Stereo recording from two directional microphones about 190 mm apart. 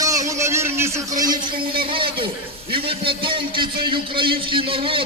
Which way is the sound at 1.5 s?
50° right (ahead or behind).